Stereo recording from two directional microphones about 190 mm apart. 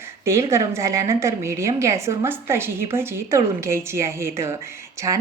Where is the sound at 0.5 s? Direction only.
15° right (ahead or behind).